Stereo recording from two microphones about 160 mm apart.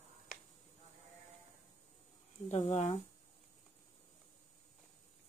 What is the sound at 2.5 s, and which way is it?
Speech, 40° left (ahead or behind).